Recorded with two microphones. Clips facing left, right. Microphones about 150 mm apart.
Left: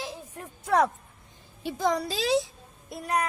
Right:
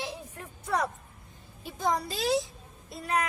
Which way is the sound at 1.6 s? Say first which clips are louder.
Left 3 dB; 90° left.